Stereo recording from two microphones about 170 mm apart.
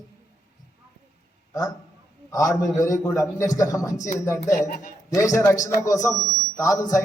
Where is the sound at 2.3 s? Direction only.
20° left (ahead or behind).